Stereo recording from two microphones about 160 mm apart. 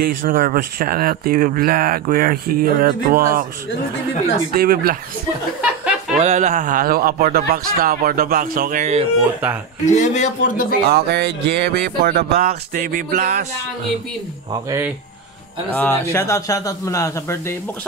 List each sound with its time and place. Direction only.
0.0 s speech: 60° right (ahead or behind)
4.6 s speech: 70° right (ahead or behind)
5.6 s chuckle: 5° right (ahead or behind)
6.1 s speech: 45° right (ahead or behind); by 8.8 s 60° right (ahead or behind)
9.8 s speech: 50° left (ahead or behind)
10.9 s speech: 90° right; by 13.4 s 60° right (ahead or behind)
15.7 s a man's voice: 10° left (ahead or behind)